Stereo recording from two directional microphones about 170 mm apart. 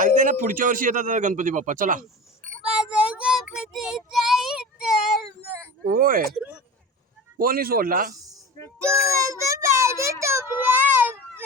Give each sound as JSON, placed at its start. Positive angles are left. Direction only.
{"t": 0.0, "sound": "a man's voice", "side_deg": -50}
{"t": 2.6, "sound": "child singing", "side_deg": -5}
{"t": 5.8, "sound": "speech", "side_deg": -55}
{"t": 6.3, "sound": "a sound", "side_deg": -10}
{"t": 7.3, "sound": "speech", "side_deg": -60}
{"t": 8.8, "sound": "a sound", "side_deg": -15}